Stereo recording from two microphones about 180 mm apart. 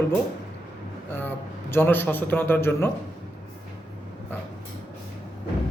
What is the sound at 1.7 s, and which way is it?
A man's voice, 10° left (ahead or behind).